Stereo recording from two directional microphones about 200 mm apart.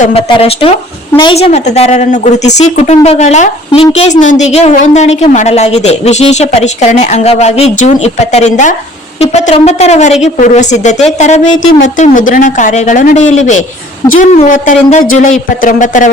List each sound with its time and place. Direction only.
0.0 s a woman's voice: 30° left (ahead or behind)